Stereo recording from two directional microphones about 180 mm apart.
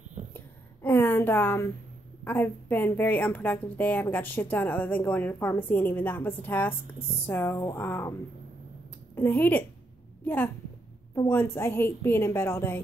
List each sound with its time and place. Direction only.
0.8 s a woman's voice: 10° left (ahead or behind)